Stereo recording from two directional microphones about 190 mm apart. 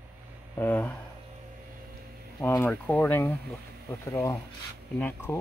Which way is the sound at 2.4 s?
10° left (ahead or behind).